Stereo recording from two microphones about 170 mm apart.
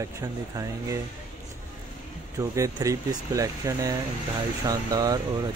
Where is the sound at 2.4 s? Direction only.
20° right (ahead or behind).